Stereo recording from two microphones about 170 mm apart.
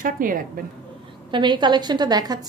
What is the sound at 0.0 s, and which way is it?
Speech, 55° right (ahead or behind).